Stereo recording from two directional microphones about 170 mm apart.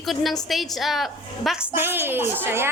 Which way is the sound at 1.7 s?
10° right (ahead or behind).